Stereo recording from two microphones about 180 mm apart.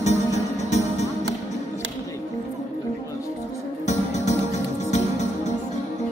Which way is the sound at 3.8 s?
40° left (ahead or behind).